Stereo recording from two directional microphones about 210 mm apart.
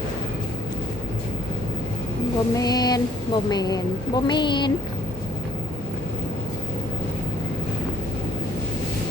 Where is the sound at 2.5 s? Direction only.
20° left (ahead or behind).